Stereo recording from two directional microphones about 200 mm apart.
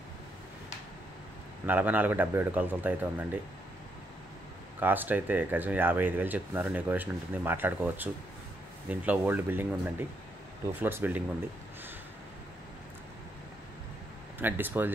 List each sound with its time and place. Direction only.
1.7 s speech: 10° right (ahead or behind)
4.7 s speech: 10° right (ahead or behind)
14.4 s speech: 10° right (ahead or behind)